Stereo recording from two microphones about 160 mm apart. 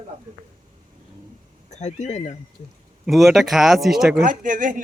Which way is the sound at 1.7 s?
45° left (ahead or behind).